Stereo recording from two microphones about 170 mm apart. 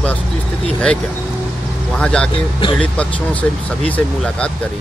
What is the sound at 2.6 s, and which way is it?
Speech, 30° left (ahead or behind).